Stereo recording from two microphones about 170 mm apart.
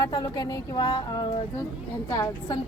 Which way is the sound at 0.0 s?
20° left (ahead or behind).